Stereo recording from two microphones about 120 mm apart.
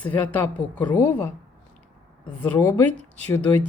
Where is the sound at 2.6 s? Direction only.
25° left (ahead or behind).